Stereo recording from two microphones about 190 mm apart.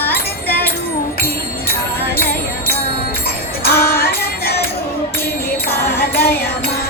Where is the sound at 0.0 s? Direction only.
10° left (ahead or behind).